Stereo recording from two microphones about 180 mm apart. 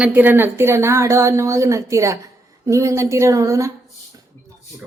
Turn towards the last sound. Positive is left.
turn(degrees=-15)  # may be behind; listen again after turning